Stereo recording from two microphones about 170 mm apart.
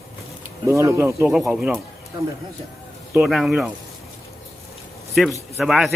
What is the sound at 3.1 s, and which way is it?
Speech, centre (ahead or behind).